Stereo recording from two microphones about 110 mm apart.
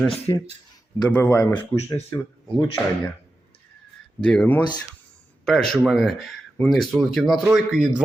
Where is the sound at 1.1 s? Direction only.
15° left (ahead or behind).